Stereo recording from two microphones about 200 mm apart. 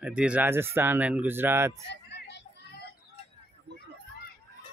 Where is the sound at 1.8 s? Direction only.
55° left (ahead or behind).